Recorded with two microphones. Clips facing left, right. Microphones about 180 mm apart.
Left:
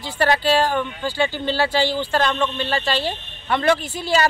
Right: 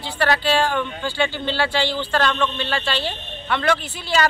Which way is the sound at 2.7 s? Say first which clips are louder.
Left 2 dB; 40° left (ahead or behind).